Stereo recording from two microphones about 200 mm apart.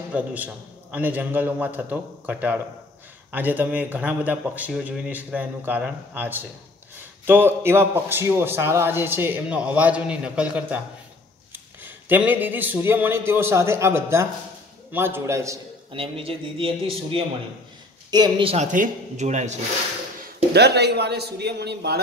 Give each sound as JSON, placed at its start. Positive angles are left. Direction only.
{"t": 0.1, "sound": "a man's voice", "side_deg": -5}
{"t": 15.9, "sound": "a man's voice", "side_deg": -25}
{"t": 20.5, "sound": "a man's voice", "side_deg": -55}